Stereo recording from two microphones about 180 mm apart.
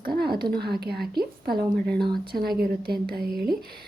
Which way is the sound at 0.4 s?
60° right (ahead or behind).